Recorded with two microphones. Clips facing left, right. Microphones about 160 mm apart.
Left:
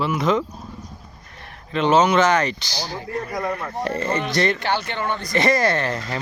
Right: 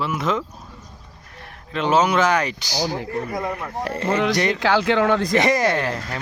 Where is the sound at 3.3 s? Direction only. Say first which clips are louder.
Even; 25° right (ahead or behind).